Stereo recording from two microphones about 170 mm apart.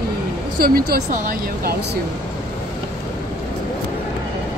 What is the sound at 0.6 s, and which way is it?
Speech, 60° right (ahead or behind).